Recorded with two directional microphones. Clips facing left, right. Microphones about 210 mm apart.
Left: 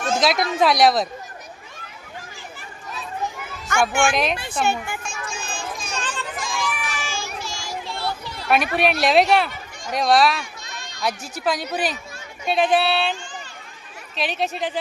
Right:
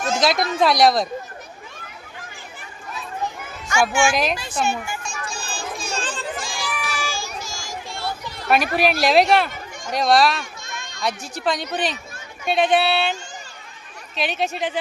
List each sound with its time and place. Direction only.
0.2 s speech: centre (ahead or behind)
3.7 s a child's voice: 55° left (ahead or behind)
5.0 s children playing: 35° right (ahead or behind); by 8.4 s 50° right (ahead or behind)
8.4 s speech: centre (ahead or behind)
14.2 s speech: centre (ahead or behind)